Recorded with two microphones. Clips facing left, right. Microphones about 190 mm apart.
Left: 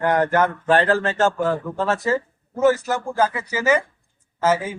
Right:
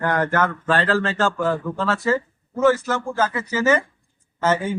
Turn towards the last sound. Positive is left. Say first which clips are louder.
# left 1 dB
turn(degrees=5)  # may be behind; listen again after turning